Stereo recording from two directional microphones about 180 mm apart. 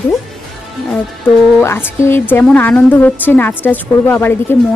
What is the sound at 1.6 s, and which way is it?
Speech, 15° left (ahead or behind).